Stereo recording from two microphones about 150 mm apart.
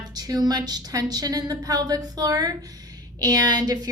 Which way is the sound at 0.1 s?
25° right (ahead or behind).